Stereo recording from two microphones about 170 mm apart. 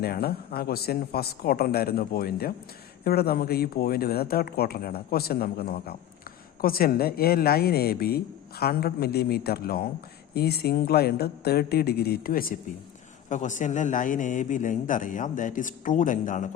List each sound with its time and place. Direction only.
0.0 s a woman's voice: 65° left (ahead or behind)
13.2 s a man's voice: 45° left (ahead or behind)